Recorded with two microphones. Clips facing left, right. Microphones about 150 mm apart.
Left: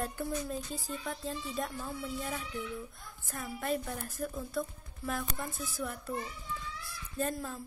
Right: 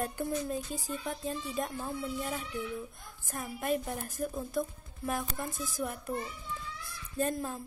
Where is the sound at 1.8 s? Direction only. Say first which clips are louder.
Right 3 dB; 30° right (ahead or behind).